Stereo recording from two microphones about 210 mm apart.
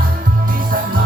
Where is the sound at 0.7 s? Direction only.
40° right (ahead or behind).